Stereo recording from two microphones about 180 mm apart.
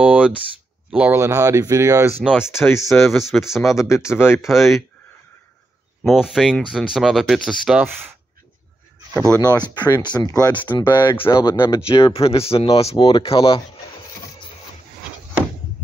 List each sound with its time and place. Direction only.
0.0 s a sound: 5° right (ahead or behind)
0.8 s speech: 10° right (ahead or behind)
2.5 s speech: 15° left (ahead or behind)
2.9 s speech: centre (ahead or behind)
3.7 s speech: 15° left (ahead or behind)
4.5 s speech: centre (ahead or behind)
6.0 s speech: 5° right (ahead or behind)
7.8 s speech: 10° right (ahead or behind)
9.8 s speech: 25° left (ahead or behind)
10.6 s speech: 10° left (ahead or behind)
11.0 s speech: 25° left (ahead or behind)